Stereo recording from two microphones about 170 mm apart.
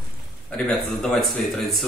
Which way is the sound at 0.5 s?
5° left (ahead or behind).